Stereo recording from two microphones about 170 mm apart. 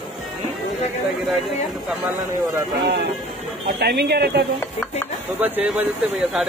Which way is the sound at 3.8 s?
70° right (ahead or behind).